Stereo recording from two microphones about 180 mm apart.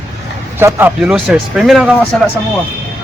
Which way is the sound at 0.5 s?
10° right (ahead or behind).